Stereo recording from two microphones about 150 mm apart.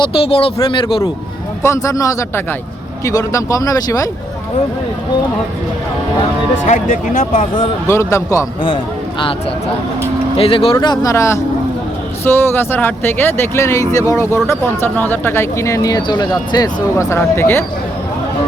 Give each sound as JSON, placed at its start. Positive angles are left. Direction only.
{"t": 0.0, "sound": "speech", "side_deg": 40}
{"t": 1.6, "sound": "speech", "side_deg": 20}
{"t": 6.7, "sound": "speech", "side_deg": 65}
{"t": 7.9, "sound": "speech", "side_deg": 20}
{"t": 10.3, "sound": "speech", "side_deg": 40}